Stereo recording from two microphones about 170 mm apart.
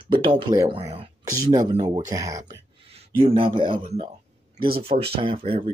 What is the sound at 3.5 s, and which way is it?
Speech, 30° right (ahead or behind).